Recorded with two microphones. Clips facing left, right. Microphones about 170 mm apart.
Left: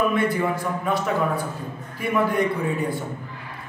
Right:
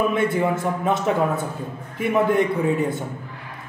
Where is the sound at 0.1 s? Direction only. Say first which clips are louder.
Right 2 dB; 25° right (ahead or behind).